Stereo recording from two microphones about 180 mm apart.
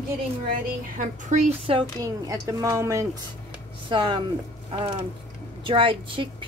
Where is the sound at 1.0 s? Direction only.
40° right (ahead or behind).